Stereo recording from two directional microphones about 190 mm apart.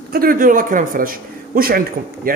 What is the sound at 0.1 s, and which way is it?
A man's voice, 50° right (ahead or behind).